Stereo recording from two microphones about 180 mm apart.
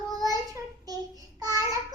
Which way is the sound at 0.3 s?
20° right (ahead or behind).